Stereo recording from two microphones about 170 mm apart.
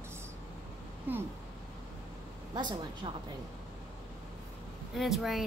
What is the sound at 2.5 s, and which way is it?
Speech, 25° right (ahead or behind).